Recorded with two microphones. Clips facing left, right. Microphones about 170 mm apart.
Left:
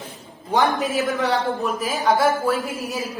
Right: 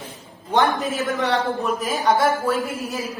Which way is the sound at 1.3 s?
Centre (ahead or behind).